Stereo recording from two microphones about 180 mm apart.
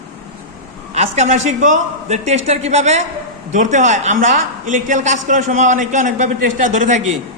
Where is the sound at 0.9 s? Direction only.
40° right (ahead or behind).